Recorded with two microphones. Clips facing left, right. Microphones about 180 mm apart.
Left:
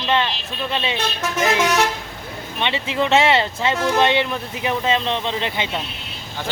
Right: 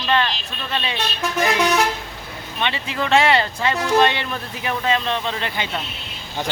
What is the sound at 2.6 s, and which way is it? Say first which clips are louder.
Speech: left 3 dB; 20° left (ahead or behind).